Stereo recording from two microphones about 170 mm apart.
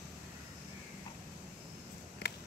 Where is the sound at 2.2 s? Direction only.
75° left (ahead or behind).